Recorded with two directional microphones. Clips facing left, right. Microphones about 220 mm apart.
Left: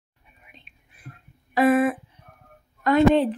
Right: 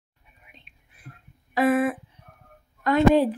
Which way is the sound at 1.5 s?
25° left (ahead or behind).